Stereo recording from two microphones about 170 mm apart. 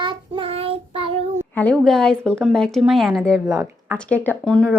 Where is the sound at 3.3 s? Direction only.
20° right (ahead or behind).